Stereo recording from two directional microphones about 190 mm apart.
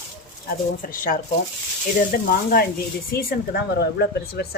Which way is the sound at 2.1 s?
55° left (ahead or behind).